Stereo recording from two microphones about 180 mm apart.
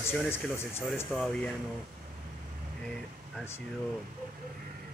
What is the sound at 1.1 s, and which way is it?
Speech, 5° left (ahead or behind).